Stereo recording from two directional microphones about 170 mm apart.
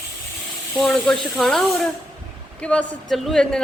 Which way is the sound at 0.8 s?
5° left (ahead or behind).